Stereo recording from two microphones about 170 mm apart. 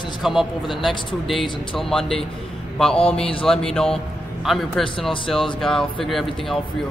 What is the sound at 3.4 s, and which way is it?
Speech, 5° left (ahead or behind).